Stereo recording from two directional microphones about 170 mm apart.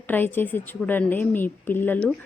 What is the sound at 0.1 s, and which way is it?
A woman's voice, 10° left (ahead or behind).